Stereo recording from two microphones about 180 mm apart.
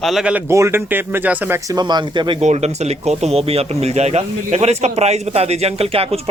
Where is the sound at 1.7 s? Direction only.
25° right (ahead or behind).